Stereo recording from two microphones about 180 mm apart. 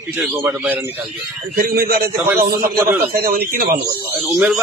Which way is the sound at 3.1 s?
55° right (ahead or behind).